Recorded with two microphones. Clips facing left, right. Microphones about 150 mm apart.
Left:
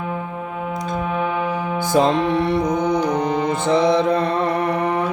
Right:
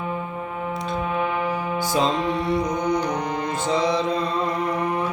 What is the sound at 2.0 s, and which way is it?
Music, 60° left (ahead or behind).